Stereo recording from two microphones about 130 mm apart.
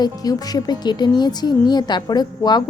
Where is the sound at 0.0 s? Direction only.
30° left (ahead or behind).